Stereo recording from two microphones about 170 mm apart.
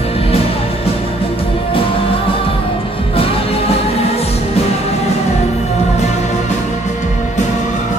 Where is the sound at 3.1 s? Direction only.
35° left (ahead or behind).